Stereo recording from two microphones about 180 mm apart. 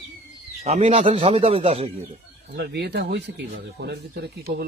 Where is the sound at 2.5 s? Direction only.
65° right (ahead or behind).